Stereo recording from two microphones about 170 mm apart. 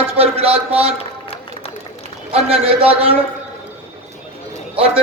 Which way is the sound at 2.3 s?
35° right (ahead or behind).